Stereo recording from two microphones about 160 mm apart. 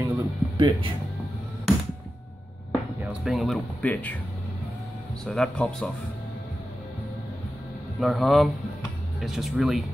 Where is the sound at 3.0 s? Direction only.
Centre (ahead or behind).